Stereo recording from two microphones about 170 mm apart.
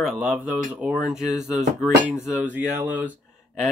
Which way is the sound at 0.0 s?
Centre (ahead or behind).